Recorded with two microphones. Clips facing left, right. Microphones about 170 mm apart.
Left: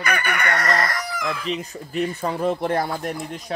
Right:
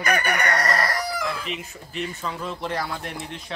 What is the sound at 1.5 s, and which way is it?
Speech, 45° left (ahead or behind).